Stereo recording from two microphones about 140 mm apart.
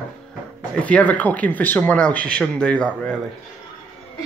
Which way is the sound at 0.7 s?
10° left (ahead or behind).